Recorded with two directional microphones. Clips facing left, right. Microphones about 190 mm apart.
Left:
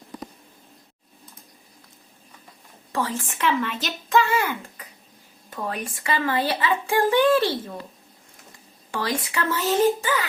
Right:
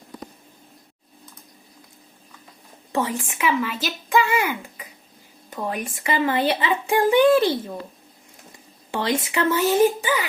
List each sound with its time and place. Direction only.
2.9 s speech: 20° right (ahead or behind)
8.9 s speech: 25° right (ahead or behind)